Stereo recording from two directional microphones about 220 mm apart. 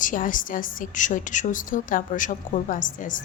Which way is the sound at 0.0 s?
35° left (ahead or behind).